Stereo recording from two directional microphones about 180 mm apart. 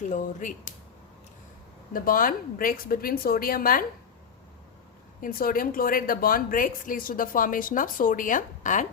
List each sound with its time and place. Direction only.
0.1 s speech: 45° left (ahead or behind)
1.9 s speech: 50° left (ahead or behind)
5.2 s speech: 50° left (ahead or behind)